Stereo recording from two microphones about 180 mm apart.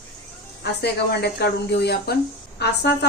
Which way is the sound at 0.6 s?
65° left (ahead or behind).